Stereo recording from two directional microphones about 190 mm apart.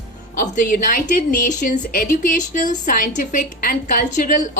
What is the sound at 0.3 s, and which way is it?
A woman's voice, 40° left (ahead or behind).